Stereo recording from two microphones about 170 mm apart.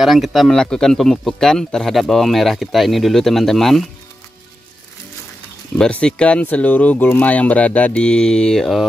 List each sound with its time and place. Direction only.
0.0 s speech: centre (ahead or behind)
5.8 s speech: 5° left (ahead or behind)